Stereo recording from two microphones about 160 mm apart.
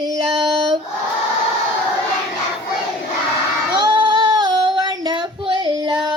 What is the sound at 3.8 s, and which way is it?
Singing, 30° right (ahead or behind).